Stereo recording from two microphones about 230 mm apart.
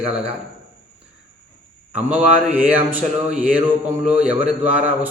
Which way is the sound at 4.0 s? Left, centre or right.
Centre.